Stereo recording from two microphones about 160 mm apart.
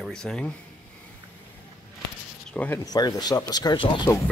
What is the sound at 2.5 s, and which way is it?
Speech, 10° left (ahead or behind).